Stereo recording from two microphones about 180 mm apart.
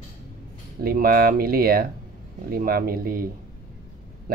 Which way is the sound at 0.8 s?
55° right (ahead or behind).